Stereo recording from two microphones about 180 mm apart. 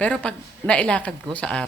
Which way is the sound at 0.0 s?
5° left (ahead or behind).